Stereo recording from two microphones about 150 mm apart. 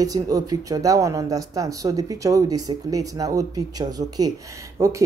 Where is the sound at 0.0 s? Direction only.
25° right (ahead or behind).